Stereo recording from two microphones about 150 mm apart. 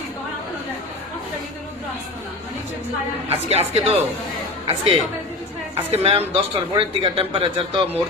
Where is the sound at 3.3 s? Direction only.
45° right (ahead or behind).